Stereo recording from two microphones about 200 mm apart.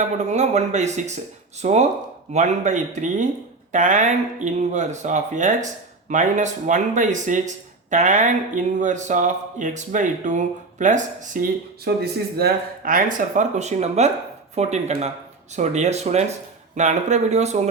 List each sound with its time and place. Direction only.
0.3 s speech: 35° right (ahead or behind)
11.9 s speech: 55° right (ahead or behind); by 17.6 s 35° right (ahead or behind)